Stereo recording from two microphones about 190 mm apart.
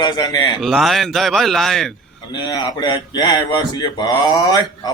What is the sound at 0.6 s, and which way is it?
A man's voice, centre (ahead or behind).